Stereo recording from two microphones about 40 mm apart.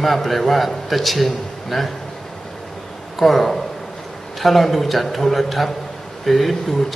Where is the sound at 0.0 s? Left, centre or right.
Centre.